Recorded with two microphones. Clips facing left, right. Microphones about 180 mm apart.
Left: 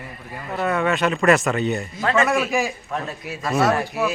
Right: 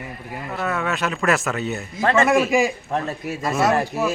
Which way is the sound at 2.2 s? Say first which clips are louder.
Right 4 dB; 15° right (ahead or behind).